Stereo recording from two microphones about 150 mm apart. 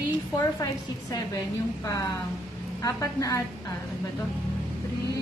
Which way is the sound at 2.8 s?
20° left (ahead or behind).